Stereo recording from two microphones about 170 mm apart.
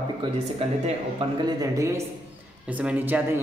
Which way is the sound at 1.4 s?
20° right (ahead or behind).